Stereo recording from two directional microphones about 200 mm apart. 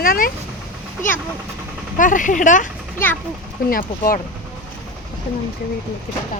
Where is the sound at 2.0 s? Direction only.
40° left (ahead or behind).